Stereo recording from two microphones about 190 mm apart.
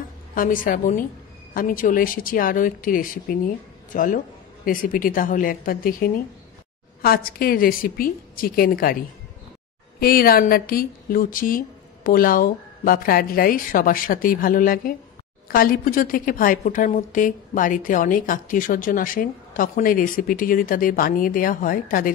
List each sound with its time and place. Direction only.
0.3 s a woman's voice: 45° left (ahead or behind)
9.9 s a woman's voice: 50° left (ahead or behind)